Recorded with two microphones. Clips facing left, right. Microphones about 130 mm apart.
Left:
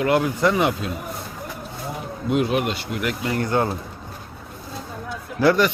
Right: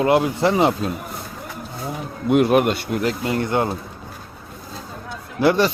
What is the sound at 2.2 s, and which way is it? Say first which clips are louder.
Speech: right 6 dB; 60° right (ahead or behind).